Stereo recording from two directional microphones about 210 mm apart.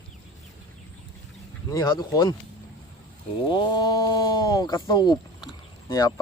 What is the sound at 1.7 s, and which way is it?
Speech, 20° left (ahead or behind).